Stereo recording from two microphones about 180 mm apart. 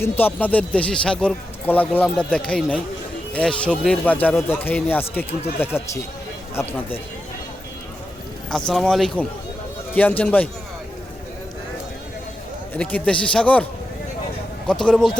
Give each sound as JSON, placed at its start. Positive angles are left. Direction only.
{"t": 0.0, "sound": "speech", "side_deg": 10}
{"t": 8.4, "sound": "a man's voice", "side_deg": 5}
{"t": 12.7, "sound": "speech", "side_deg": 5}
{"t": 14.7, "sound": "a man's voice", "side_deg": 5}